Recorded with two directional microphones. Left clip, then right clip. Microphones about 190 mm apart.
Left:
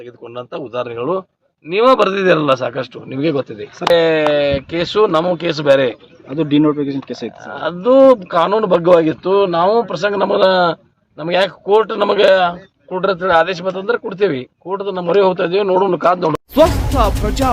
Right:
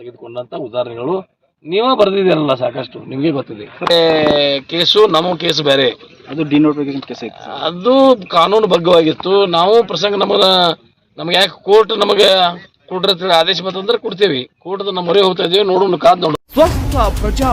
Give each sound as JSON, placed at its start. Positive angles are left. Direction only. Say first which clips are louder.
{"t": 0.3, "sound": "a man's voice", "louder": "right 3 dB", "side_deg": 25}
{"t": 3.9, "sound": "speech", "louder": "right 2 dB", "side_deg": 5}
{"t": 6.3, "sound": "speech", "louder": "right 1 dB", "side_deg": 55}
{"t": 7.4, "sound": "a man's voice", "louder": "right 1 dB", "side_deg": 0}